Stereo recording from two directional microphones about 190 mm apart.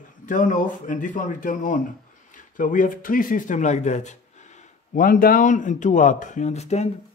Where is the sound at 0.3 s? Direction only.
40° left (ahead or behind).